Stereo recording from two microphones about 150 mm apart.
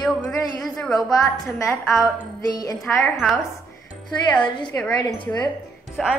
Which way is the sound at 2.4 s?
25° left (ahead or behind).